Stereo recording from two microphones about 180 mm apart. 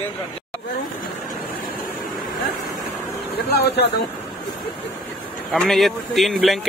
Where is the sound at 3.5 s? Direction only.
65° left (ahead or behind).